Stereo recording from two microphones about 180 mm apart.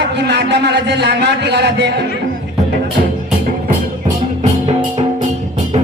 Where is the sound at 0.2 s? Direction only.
70° right (ahead or behind).